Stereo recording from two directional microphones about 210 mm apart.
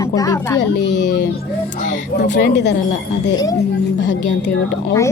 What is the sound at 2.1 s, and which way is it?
Speech, 55° left (ahead or behind).